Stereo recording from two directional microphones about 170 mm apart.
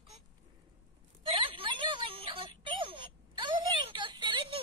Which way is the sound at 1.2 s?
30° right (ahead or behind).